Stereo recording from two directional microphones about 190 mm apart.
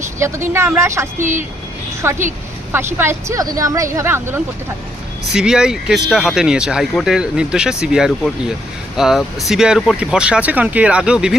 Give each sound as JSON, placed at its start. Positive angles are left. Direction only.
{"t": 0.2, "sound": "speech", "side_deg": -15}
{"t": 1.2, "sound": "speech", "side_deg": -40}
{"t": 2.0, "sound": "speech", "side_deg": -15}